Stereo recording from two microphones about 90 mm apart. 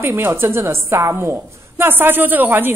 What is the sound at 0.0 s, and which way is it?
Speech, 25° right (ahead or behind).